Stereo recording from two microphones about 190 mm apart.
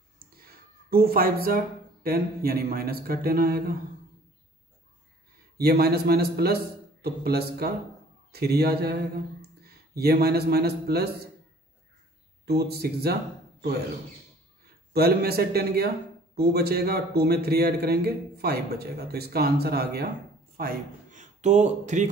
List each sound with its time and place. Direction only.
0.4 s a sound: 50° right (ahead or behind)
2.0 s speech: 50° right (ahead or behind)
5.6 s speech: 55° right (ahead or behind)
12.4 s speech: 55° right (ahead or behind)
14.9 s a man's voice: 55° right (ahead or behind); by 22.1 s 40° right (ahead or behind)